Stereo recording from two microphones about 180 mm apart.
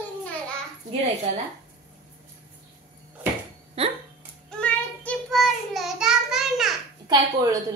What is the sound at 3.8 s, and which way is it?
Speech, 30° right (ahead or behind).